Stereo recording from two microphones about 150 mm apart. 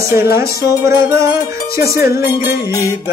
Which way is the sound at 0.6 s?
20° right (ahead or behind).